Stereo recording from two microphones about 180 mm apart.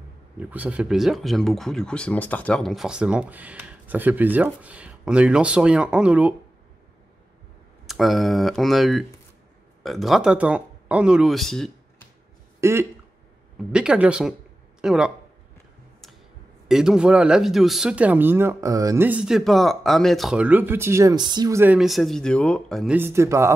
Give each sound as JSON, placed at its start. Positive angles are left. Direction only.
{"t": 0.4, "sound": "speech", "side_deg": -10}
{"t": 7.8, "sound": "speech", "side_deg": 0}
{"t": 12.5, "sound": "a sound", "side_deg": -15}
{"t": 13.7, "sound": "speech", "side_deg": -5}
{"t": 16.6, "sound": "speech", "side_deg": -5}
{"t": 21.7, "sound": "speech", "side_deg": 0}
{"t": 22.9, "sound": "speech", "side_deg": -15}